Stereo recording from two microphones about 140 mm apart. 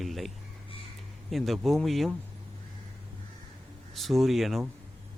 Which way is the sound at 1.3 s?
Centre (ahead or behind).